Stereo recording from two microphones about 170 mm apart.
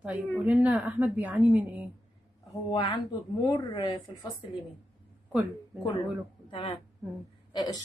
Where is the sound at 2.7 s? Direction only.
30° left (ahead or behind).